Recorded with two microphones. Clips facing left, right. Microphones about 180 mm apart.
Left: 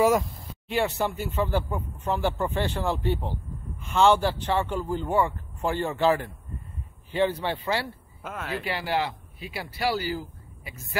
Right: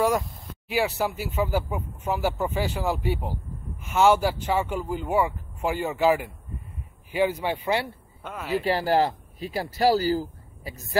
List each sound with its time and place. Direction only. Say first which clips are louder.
0.7 s speech: right 1 dB; 5° right (ahead or behind)
8.2 s speech: right 5 dB; centre (ahead or behind)
8.6 s speech: right 6 dB; 40° right (ahead or behind)